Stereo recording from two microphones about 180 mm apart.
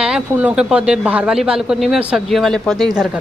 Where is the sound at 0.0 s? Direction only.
5° right (ahead or behind).